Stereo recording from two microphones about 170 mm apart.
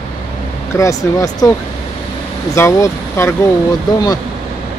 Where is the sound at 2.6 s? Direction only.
15° left (ahead or behind).